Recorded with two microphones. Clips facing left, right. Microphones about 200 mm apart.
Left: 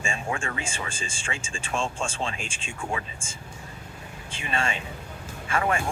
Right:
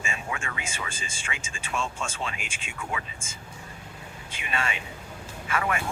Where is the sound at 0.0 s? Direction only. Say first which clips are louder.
Left 4 dB; 30° left (ahead or behind).